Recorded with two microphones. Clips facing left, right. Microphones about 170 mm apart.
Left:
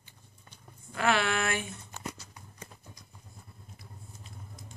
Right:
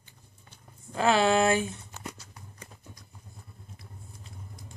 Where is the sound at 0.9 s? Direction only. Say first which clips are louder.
Right 5 dB; 35° right (ahead or behind).